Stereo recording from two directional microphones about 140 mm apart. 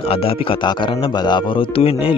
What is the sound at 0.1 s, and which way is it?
Speech, 40° left (ahead or behind).